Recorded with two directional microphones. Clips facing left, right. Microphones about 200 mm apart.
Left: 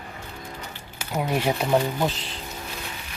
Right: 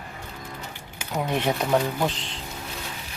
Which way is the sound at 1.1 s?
10° left (ahead or behind).